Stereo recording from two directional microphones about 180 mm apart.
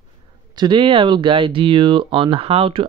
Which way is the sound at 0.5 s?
25° right (ahead or behind).